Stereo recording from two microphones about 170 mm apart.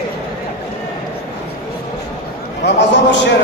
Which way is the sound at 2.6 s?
90° left.